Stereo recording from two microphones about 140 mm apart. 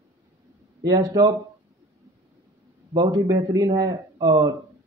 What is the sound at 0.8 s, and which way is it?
Speech, 25° right (ahead or behind).